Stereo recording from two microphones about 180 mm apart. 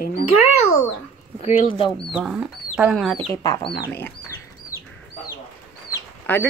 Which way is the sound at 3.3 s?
15° left (ahead or behind).